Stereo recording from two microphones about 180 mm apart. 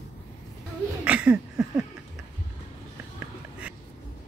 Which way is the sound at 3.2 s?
5° right (ahead or behind).